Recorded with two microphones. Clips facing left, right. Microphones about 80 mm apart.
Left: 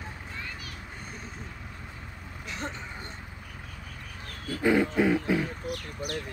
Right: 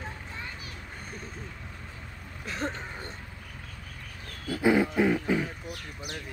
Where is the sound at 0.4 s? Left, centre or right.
Right.